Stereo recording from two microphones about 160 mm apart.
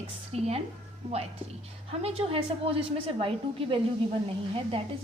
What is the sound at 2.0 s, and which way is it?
A woman's voice, 35° right (ahead or behind).